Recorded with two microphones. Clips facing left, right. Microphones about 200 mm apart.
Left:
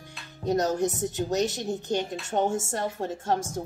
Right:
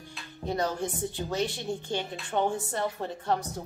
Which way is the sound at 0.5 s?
45° left (ahead or behind).